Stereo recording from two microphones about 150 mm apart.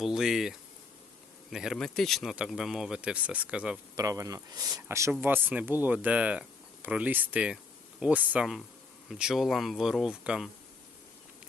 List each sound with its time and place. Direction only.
0.0 s speech: 5° right (ahead or behind)
3.9 s speech: 20° right (ahead or behind); by 10.5 s 5° right (ahead or behind)